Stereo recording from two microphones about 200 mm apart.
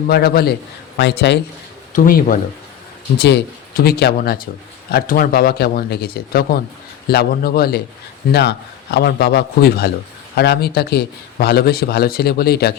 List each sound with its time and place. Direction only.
0.1 s a man's voice: 50° left (ahead or behind)
1.9 s a man's voice: 45° left (ahead or behind)
3.2 s a man's voice: 55° left (ahead or behind)